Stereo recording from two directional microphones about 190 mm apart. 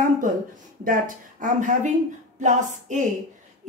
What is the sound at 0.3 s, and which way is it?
A woman's voice, 45° right (ahead or behind).